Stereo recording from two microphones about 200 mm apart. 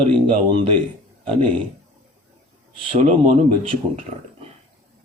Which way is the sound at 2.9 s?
35° right (ahead or behind).